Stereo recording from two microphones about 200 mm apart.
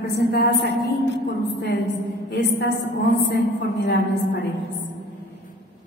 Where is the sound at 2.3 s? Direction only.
55° left (ahead or behind).